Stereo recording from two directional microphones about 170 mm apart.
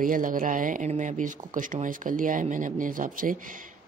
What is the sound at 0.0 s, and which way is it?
Speech, 55° right (ahead or behind).